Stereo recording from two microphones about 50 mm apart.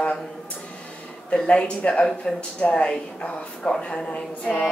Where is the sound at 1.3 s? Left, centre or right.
Left.